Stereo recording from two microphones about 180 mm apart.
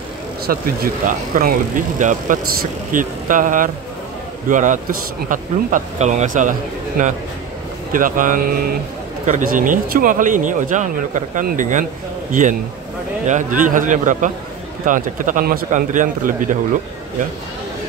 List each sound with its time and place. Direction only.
0.5 s speech: 50° right (ahead or behind)
13.3 s speech: 45° right (ahead or behind)